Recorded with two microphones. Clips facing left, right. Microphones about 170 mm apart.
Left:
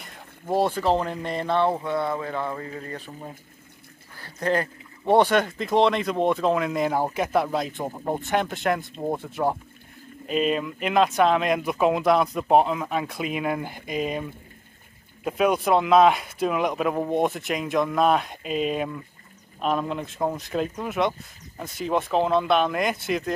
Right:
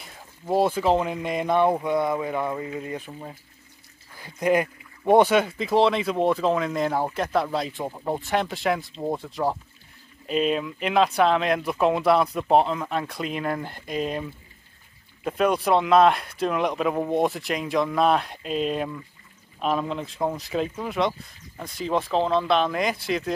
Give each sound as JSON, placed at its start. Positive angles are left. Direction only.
{"t": 0.0, "sound": "a sound", "side_deg": 0}
{"t": 0.6, "sound": "speech", "side_deg": -10}
{"t": 4.2, "sound": "speech", "side_deg": -10}